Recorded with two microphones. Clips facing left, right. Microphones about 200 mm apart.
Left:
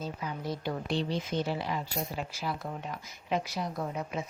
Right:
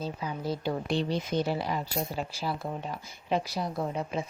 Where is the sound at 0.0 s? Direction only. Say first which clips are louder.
Right 3 dB; 30° right (ahead or behind).